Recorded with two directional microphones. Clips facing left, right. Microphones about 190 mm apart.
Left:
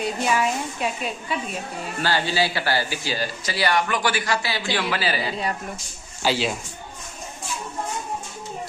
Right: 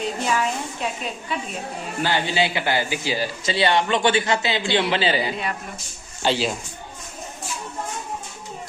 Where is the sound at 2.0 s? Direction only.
20° right (ahead or behind).